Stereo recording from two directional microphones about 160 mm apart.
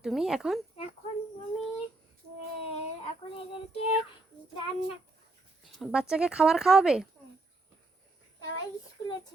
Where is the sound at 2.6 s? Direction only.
40° left (ahead or behind).